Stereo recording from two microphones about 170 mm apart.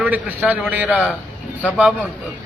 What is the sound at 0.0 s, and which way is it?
Speech, 10° right (ahead or behind).